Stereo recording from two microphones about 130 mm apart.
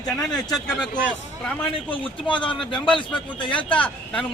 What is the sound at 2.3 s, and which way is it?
Speech, 40° left (ahead or behind).